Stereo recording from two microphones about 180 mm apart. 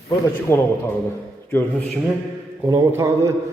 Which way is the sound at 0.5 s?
15° left (ahead or behind).